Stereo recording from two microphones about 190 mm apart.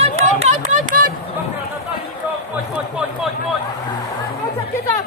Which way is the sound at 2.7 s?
5° right (ahead or behind).